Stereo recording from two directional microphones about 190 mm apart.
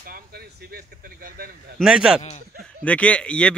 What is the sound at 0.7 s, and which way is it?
Speech, 50° right (ahead or behind).